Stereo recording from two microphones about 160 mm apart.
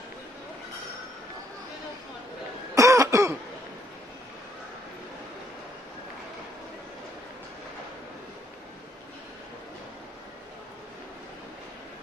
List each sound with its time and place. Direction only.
2.7 s cough: 20° right (ahead or behind)